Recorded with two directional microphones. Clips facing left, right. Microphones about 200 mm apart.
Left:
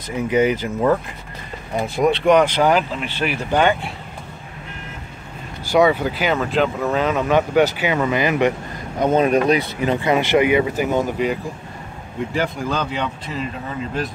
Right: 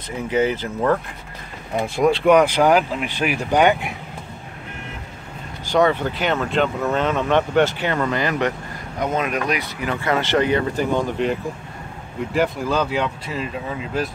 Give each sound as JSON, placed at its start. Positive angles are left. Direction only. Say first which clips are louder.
{"t": 0.3, "sound": "speech", "louder": "left 2 dB", "side_deg": 10}
{"t": 1.8, "sound": "speech", "louder": "even", "side_deg": 0}
{"t": 5.7, "sound": "speech", "louder": "left 2 dB", "side_deg": 10}
{"t": 9.0, "sound": "speech", "louder": "left 7 dB", "side_deg": 30}
{"t": 12.4, "sound": "speech", "louder": "right 3 dB", "side_deg": -5}